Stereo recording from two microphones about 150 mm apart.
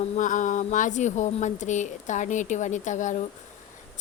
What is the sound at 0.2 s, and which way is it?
A woman's voice, 60° left (ahead or behind).